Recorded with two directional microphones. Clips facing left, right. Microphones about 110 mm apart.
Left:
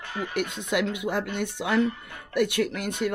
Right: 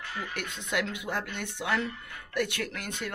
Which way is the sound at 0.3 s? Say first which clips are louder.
Left 8 dB; 15° left (ahead or behind).